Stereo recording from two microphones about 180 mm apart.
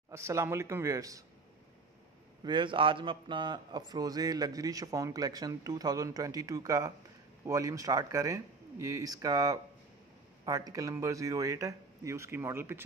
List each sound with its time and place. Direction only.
0.1 s speech: 15° right (ahead or behind)
2.4 s a man's voice: 25° right (ahead or behind)